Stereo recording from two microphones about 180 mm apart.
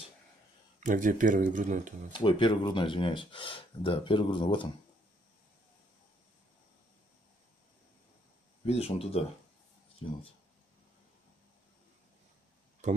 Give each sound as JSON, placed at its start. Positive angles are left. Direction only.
{"t": 0.8, "sound": "speech", "side_deg": -45}
{"t": 2.1, "sound": "speech", "side_deg": 30}
{"t": 8.6, "sound": "speech", "side_deg": 35}
{"t": 12.8, "sound": "speech", "side_deg": -40}